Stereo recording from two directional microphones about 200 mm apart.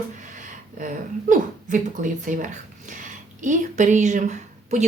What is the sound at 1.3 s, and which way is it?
Speech, 40° right (ahead or behind).